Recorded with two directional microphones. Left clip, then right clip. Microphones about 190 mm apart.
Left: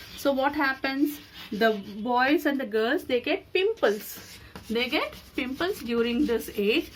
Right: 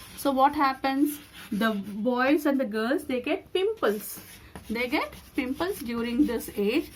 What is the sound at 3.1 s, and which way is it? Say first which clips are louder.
Speech: left 2 dB; 50° right (ahead or behind).